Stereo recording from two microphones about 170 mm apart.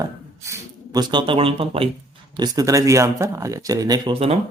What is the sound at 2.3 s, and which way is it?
Speech, 25° right (ahead or behind).